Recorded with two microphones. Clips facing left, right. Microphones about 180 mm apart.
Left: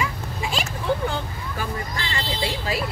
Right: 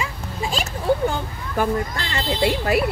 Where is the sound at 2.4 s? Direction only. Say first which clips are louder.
Right 9 dB; 60° right (ahead or behind).